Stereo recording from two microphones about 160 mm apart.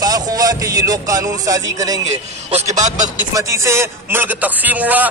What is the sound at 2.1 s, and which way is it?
A man's voice, 40° right (ahead or behind).